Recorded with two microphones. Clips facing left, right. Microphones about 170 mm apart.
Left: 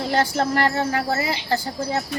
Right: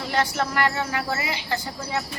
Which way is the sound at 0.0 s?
35° left (ahead or behind).